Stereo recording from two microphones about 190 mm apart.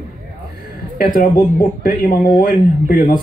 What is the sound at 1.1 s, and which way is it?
Speech, 45° left (ahead or behind).